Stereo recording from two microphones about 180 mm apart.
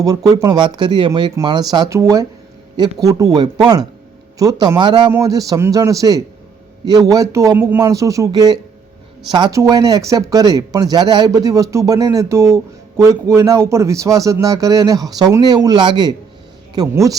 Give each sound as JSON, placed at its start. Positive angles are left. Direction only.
{"t": 0.0, "sound": "speech", "side_deg": -20}